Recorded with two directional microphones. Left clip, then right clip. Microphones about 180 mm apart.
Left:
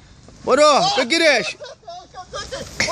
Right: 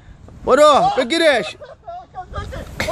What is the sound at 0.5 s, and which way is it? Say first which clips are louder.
Speech: right 2 dB; 20° right (ahead or behind).